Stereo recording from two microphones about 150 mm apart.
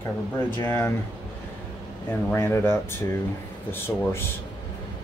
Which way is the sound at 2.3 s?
15° left (ahead or behind).